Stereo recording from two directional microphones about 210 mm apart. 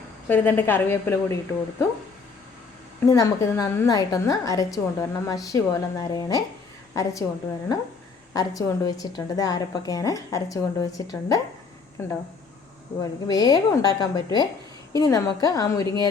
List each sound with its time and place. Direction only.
0.3 s a woman's voice: 10° left (ahead or behind)
3.1 s a woman's voice: 15° left (ahead or behind)
8.3 s a woman's voice: 15° left (ahead or behind)